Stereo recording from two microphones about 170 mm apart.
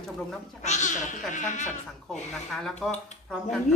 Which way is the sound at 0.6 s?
45° left (ahead or behind).